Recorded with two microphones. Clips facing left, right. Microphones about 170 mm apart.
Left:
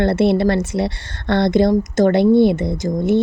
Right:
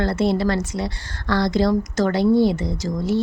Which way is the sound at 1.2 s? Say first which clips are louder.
Left 4 dB; 25° left (ahead or behind).